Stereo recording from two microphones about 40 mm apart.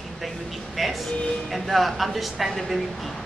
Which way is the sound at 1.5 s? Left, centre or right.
Centre.